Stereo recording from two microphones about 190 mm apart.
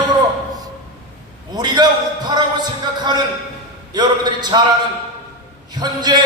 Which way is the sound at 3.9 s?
20° right (ahead or behind).